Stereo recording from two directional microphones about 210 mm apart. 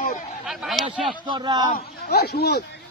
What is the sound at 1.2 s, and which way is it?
Speech, 20° right (ahead or behind).